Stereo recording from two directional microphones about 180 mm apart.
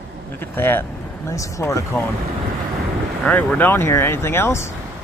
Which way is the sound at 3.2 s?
5° left (ahead or behind).